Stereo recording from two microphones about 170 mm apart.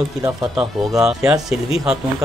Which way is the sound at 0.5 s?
5° right (ahead or behind).